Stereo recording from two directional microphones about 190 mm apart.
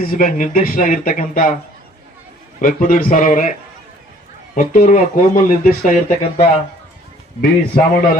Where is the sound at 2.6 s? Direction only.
45° left (ahead or behind).